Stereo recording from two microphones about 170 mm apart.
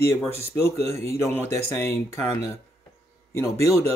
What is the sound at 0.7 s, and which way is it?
Speech, 35° right (ahead or behind).